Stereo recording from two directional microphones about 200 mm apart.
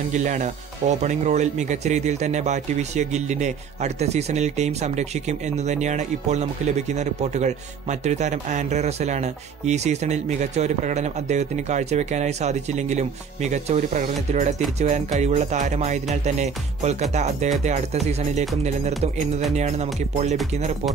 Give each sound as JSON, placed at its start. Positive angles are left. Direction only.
{"t": 0.1, "sound": "a man's voice", "side_deg": -35}
{"t": 19.5, "sound": "a man's voice", "side_deg": -35}